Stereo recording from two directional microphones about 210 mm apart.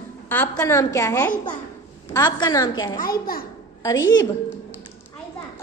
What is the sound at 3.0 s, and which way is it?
Speech, 45° left (ahead or behind).